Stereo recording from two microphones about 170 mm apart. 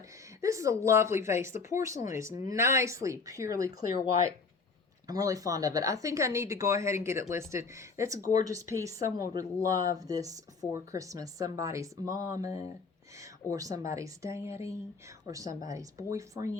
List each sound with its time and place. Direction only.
0.4 s speech: 20° right (ahead or behind)
5.0 s speech: 20° right (ahead or behind)
13.5 s speech: 20° right (ahead or behind)